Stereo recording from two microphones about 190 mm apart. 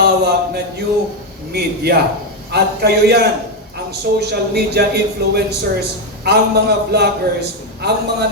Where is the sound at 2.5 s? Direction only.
55° right (ahead or behind).